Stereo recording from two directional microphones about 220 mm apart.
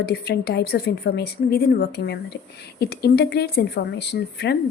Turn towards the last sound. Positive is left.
turn(degrees=50)  # may be behind; listen again after turning